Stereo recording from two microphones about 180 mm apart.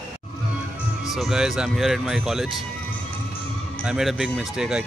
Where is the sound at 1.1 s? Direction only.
Centre (ahead or behind).